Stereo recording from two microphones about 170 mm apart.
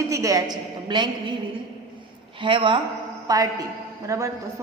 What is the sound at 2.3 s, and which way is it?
A woman's voice, 30° right (ahead or behind).